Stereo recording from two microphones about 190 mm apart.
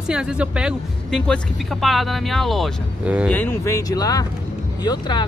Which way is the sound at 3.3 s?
10° left (ahead or behind).